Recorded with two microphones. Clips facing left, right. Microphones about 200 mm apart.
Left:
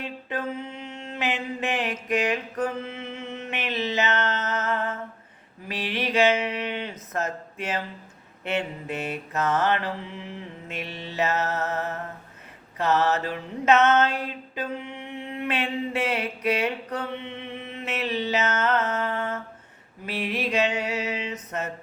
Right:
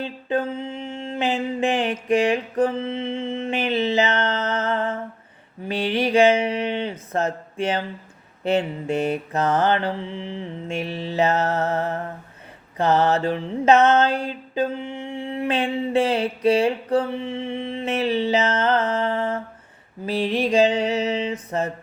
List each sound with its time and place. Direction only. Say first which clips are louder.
0.0 s mantra: right 7 dB; 30° right (ahead or behind)